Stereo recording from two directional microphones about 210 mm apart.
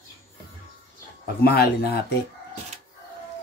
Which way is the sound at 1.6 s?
50° left (ahead or behind).